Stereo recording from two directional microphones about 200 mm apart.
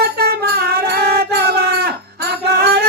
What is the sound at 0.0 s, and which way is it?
Music, 50° right (ahead or behind).